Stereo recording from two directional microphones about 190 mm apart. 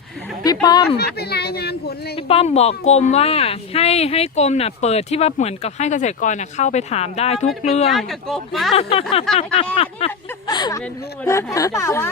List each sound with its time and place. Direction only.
0.4 s speech: 20° left (ahead or behind)
0.9 s speech: 55° left (ahead or behind)
2.1 s speech: 30° left (ahead or behind)
7.9 s speech: centre (ahead or behind)
8.7 s speech: 30° left (ahead or behind)
9.3 s speech: centre (ahead or behind)
9.7 s speech: 30° left (ahead or behind)